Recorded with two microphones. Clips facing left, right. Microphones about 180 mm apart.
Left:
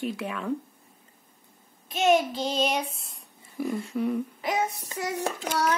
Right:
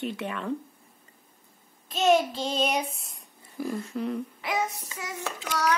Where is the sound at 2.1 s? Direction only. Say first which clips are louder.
Even; centre (ahead or behind).